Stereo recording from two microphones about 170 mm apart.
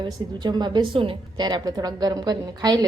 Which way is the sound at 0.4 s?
25° right (ahead or behind).